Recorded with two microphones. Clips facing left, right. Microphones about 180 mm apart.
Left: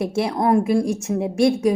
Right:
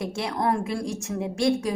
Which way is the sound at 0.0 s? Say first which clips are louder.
Left 6 dB; 25° left (ahead or behind).